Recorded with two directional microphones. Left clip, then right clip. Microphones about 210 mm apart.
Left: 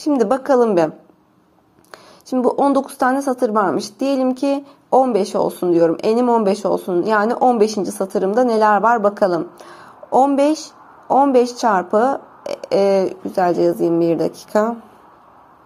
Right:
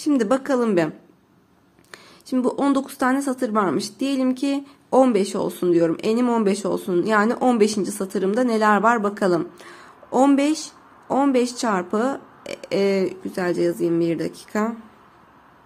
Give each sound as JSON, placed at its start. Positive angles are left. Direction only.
{"t": 0.0, "sound": "speech", "side_deg": -25}